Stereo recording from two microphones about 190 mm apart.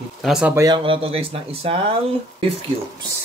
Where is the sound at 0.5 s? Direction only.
20° right (ahead or behind).